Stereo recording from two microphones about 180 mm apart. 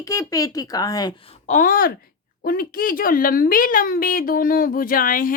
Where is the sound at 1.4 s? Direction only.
50° left (ahead or behind).